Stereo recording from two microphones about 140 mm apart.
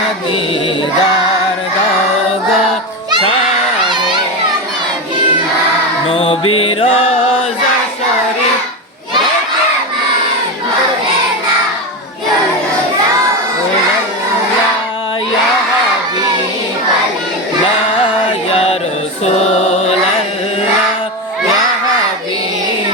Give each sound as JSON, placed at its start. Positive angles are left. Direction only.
{"t": 3.8, "sound": "children playing", "side_deg": -35}
{"t": 6.1, "sound": "music", "side_deg": 40}
{"t": 18.0, "sound": "music", "side_deg": 40}
{"t": 19.2, "sound": "chant", "side_deg": 50}